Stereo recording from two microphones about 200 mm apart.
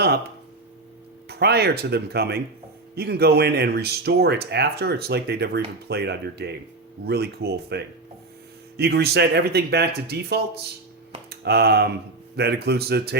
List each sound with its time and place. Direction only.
1.3 s a man's voice: 55° right (ahead or behind)